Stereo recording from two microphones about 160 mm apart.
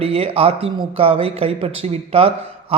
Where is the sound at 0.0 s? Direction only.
35° right (ahead or behind).